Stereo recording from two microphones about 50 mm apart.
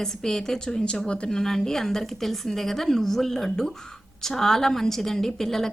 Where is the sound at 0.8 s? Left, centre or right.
Centre.